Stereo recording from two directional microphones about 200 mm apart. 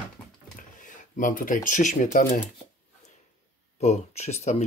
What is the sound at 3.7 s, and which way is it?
Speech, 35° left (ahead or behind).